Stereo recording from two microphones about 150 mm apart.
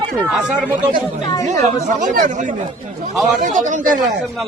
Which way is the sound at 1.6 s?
55° right (ahead or behind).